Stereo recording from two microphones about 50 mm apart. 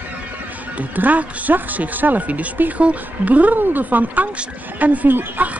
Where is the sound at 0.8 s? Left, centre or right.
Right.